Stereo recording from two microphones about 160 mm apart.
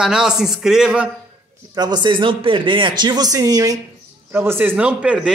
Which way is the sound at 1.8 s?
25° right (ahead or behind).